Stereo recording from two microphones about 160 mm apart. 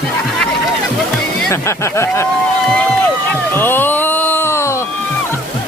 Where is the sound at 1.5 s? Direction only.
15° left (ahead or behind).